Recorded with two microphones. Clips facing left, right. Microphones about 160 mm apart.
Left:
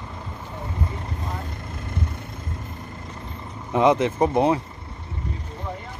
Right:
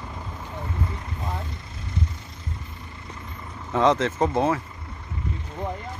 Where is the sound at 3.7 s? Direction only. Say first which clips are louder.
Left 2 dB; 15° left (ahead or behind).